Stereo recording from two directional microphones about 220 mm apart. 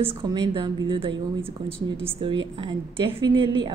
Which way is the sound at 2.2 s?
20° right (ahead or behind).